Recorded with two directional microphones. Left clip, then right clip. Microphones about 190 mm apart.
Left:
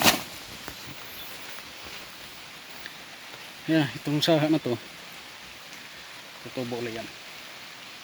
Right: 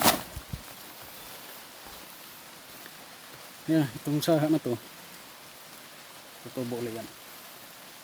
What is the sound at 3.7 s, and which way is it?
Speech, 10° right (ahead or behind).